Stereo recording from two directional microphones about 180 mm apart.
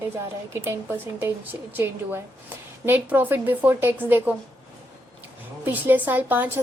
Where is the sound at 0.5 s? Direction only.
10° right (ahead or behind).